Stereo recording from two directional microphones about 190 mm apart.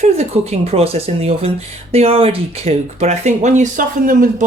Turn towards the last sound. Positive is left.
turn(degrees=-45)  # may be behind; listen again after turning